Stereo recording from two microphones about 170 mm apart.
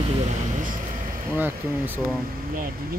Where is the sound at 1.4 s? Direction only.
10° right (ahead or behind).